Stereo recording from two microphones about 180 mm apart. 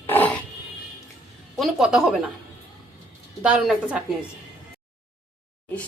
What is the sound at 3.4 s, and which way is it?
Speech, 5° right (ahead or behind).